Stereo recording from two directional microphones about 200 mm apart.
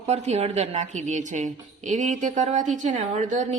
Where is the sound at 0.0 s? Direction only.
35° right (ahead or behind).